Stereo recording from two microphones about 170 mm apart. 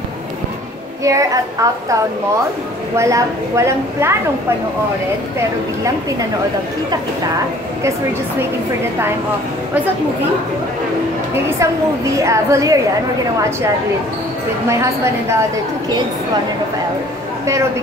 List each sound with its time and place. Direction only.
1.0 s a woman's voice: 20° right (ahead or behind)
3.0 s a woman's voice: 20° right (ahead or behind)
11.6 s a woman's voice: 15° right (ahead or behind)